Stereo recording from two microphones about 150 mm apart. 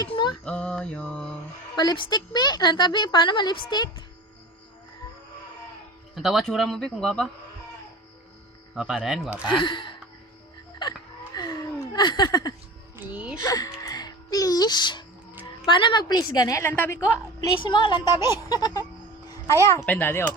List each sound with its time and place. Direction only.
0.0 s a sound: 30° left (ahead or behind)
0.4 s mantra: 5° left (ahead or behind)
1.7 s a woman's voice: 30° left (ahead or behind)
6.1 s speech: centre (ahead or behind)
8.9 s speech: centre (ahead or behind)
9.5 s speech: 35° left (ahead or behind)
11.3 s a sound: 25° left (ahead or behind)
13.0 s speech: 10° right (ahead or behind)
13.4 s a woman's voice: 20° left (ahead or behind)
13.8 s music: 25° left (ahead or behind)
15.4 s a woman's voice: 35° left (ahead or behind); by 17.2 s 15° left (ahead or behind)
17.6 s a woman's voice: 30° left (ahead or behind)
19.9 s mantra: 10° left (ahead or behind)